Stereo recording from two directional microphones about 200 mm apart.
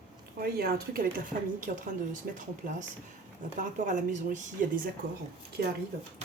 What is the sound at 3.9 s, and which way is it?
Speech, 40° right (ahead or behind).